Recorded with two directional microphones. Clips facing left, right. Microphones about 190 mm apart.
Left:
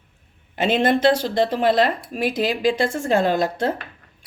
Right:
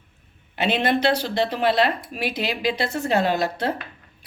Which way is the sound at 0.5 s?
45° left (ahead or behind).